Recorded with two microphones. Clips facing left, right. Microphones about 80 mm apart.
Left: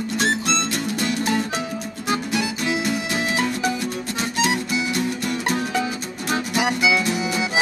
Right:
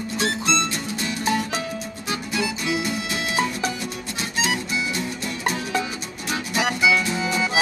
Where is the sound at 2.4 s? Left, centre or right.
Left.